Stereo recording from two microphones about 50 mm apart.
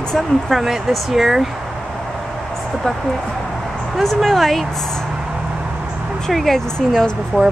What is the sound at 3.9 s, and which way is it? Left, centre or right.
Speech, centre.